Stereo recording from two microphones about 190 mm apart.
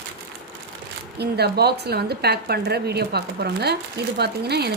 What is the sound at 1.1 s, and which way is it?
Speech, 60° right (ahead or behind).